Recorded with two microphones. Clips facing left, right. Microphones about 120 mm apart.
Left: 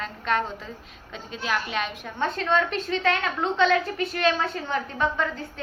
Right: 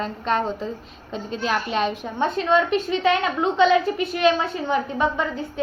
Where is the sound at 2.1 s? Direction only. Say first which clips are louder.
Right 3 dB; 10° right (ahead or behind).